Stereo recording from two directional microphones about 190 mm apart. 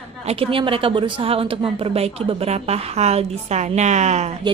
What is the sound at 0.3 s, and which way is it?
A woman's voice, 30° right (ahead or behind).